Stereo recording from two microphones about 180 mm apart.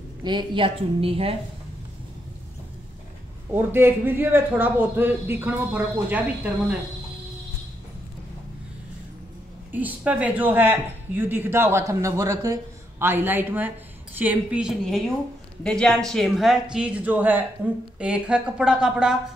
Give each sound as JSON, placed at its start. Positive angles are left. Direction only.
{"t": 0.2, "sound": "a woman's voice", "side_deg": -25}
{"t": 3.5, "sound": "speech", "side_deg": -10}
{"t": 9.7, "sound": "speech", "side_deg": -10}